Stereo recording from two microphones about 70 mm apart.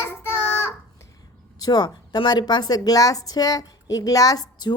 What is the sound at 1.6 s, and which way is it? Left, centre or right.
A woman's voice, left.